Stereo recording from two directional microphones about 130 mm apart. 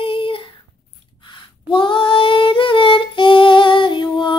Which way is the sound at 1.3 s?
40° left (ahead or behind).